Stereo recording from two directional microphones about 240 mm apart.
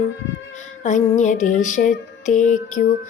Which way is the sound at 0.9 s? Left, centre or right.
Left.